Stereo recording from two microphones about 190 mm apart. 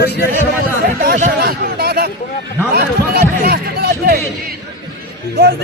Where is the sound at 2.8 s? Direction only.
55° right (ahead or behind).